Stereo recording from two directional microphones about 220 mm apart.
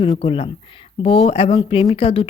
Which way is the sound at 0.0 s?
25° left (ahead or behind).